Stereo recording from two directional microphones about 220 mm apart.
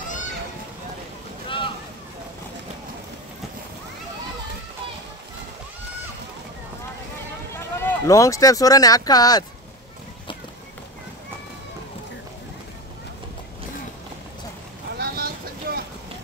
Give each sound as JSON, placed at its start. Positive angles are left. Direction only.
{"t": 7.5, "sound": "speech", "side_deg": 10}
{"t": 15.0, "sound": "boat", "side_deg": -45}